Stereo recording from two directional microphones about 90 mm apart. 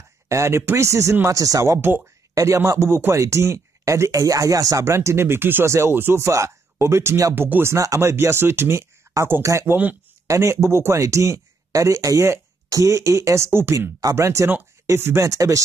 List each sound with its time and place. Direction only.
0.3 s speech: 35° right (ahead or behind)
1.8 s speech: 25° right (ahead or behind)
7.3 s speech: 25° right (ahead or behind)
7.7 s speech: 35° right (ahead or behind)
9.1 s a sound: 30° right (ahead or behind)
9.4 s speech: 35° right (ahead or behind)